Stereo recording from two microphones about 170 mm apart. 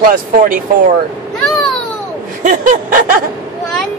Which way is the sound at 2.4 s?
50° right (ahead or behind).